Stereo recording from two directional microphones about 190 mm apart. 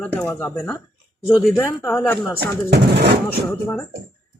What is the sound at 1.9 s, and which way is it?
Speech, 10° left (ahead or behind).